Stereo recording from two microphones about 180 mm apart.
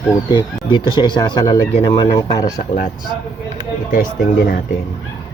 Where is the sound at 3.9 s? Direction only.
55° left (ahead or behind).